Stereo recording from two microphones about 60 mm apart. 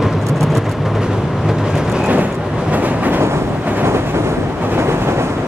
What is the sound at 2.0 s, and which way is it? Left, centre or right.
Vehicle, right.